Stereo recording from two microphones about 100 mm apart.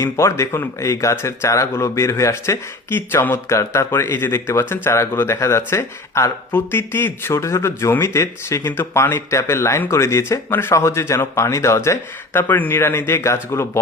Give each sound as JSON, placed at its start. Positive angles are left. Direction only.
{"t": 0.0, "sound": "speech", "side_deg": 30}